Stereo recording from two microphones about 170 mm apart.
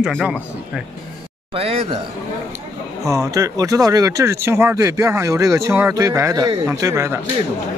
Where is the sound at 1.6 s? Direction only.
35° right (ahead or behind).